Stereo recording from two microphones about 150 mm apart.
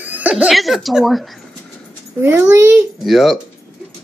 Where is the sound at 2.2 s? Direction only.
15° right (ahead or behind).